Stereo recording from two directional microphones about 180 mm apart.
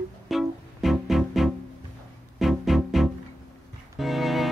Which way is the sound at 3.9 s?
Centre (ahead or behind).